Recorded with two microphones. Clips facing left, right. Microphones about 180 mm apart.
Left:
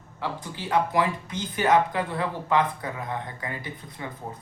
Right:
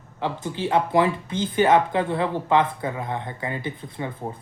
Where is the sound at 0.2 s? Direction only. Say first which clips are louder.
Right 6 dB; 25° right (ahead or behind).